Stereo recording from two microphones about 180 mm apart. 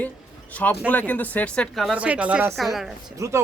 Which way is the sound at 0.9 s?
10° left (ahead or behind).